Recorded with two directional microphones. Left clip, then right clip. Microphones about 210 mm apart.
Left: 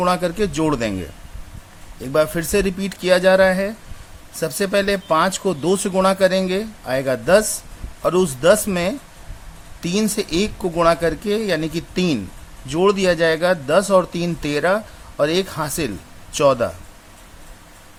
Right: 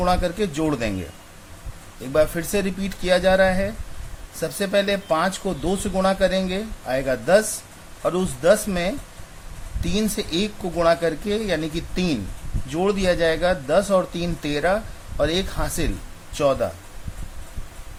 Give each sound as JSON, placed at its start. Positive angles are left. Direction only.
{"t": 0.0, "sound": "speech", "side_deg": 25}
{"t": 2.1, "sound": "a man's voice", "side_deg": 25}